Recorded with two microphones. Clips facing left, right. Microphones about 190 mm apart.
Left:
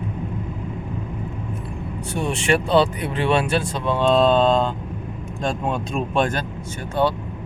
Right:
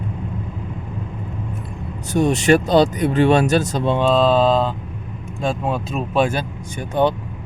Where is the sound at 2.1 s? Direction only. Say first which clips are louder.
Right 6 dB; 40° right (ahead or behind).